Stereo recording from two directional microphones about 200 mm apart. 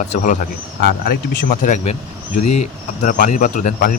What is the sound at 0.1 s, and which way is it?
Speech, 40° left (ahead or behind).